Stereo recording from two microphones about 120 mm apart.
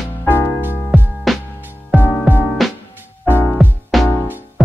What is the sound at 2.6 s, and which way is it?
Music, centre (ahead or behind).